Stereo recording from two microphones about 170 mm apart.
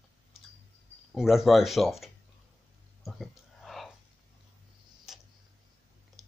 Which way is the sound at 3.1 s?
Centre (ahead or behind).